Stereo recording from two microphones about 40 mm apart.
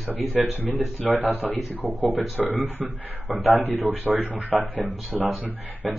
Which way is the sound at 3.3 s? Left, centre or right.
Right.